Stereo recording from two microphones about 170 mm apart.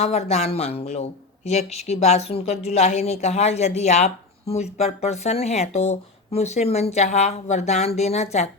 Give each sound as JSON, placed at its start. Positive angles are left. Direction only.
{"t": 0.0, "sound": "speech", "side_deg": 40}